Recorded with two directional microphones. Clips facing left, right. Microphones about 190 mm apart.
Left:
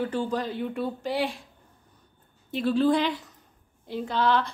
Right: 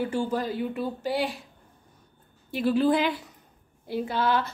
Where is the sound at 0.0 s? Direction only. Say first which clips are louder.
Right 1 dB; 10° right (ahead or behind).